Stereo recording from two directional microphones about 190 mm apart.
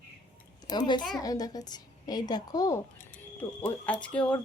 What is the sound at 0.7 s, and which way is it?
Speech, 25° left (ahead or behind).